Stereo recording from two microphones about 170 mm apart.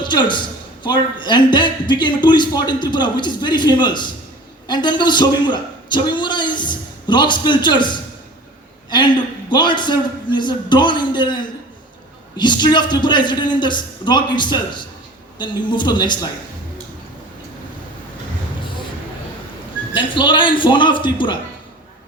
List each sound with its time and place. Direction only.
0.0 s a man's voice: 25° left (ahead or behind)
12.4 s a man's voice: 25° left (ahead or behind)
19.9 s a man's voice: 30° left (ahead or behind)